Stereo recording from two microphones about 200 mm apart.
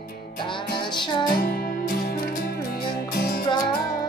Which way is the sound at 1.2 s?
50° left (ahead or behind).